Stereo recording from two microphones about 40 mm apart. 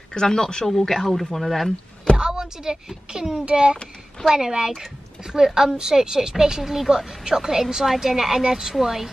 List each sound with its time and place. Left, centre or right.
0.1 s speech: centre
2.1 s a woman's voice: centre
3.7 s a child's voice: left
4.3 s a woman's voice: centre